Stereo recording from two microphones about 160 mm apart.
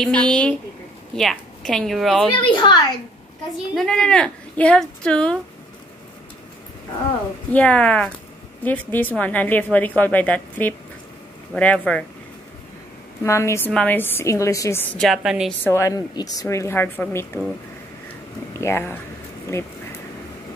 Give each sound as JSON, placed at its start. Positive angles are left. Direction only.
{"t": 0.0, "sound": "speech", "side_deg": 5}
{"t": 2.3, "sound": "a woman's voice", "side_deg": 30}
{"t": 3.7, "sound": "speech", "side_deg": 5}
{"t": 7.5, "sound": "a woman's voice", "side_deg": 10}
{"t": 13.2, "sound": "a woman's voice", "side_deg": 20}
{"t": 15.6, "sound": "a woman's voice", "side_deg": 15}
{"t": 18.6, "sound": "a woman's voice", "side_deg": 15}